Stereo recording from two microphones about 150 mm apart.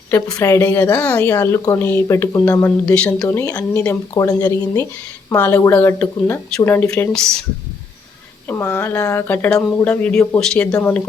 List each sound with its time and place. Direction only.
0.3 s speech: 20° left (ahead or behind)
1.2 s speech: 20° left (ahead or behind)
3.2 s speech: 20° left (ahead or behind)
8.4 s speech: 15° left (ahead or behind)